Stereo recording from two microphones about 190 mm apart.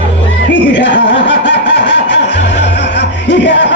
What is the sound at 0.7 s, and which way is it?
Snicker, 65° left (ahead or behind).